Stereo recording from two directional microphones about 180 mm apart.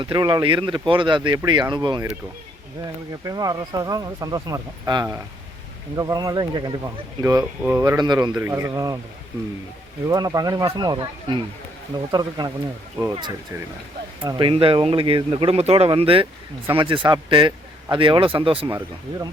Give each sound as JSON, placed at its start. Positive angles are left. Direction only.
{"t": 0.0, "sound": "speech", "side_deg": -25}
{"t": 10.1, "sound": "speech", "side_deg": -20}